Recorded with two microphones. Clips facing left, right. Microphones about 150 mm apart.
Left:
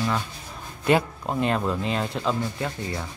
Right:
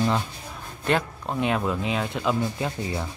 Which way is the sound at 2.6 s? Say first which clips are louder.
Right 1 dB; 10° right (ahead or behind).